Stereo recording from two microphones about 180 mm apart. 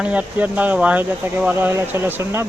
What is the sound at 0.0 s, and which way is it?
Speech, 10° right (ahead or behind).